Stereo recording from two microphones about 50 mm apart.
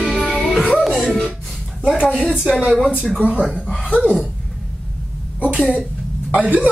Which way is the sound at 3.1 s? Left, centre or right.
Right.